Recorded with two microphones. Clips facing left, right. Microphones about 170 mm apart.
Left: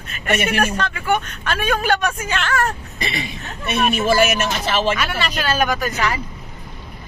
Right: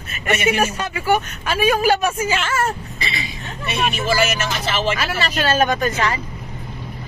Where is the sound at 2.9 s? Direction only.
55° left (ahead or behind).